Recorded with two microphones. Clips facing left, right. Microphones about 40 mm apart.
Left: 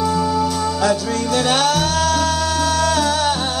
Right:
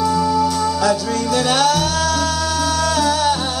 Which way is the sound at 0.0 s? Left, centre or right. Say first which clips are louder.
Right 2 dB; centre.